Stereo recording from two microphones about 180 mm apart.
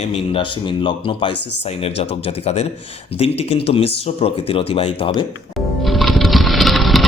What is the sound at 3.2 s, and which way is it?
Speech, 35° left (ahead or behind).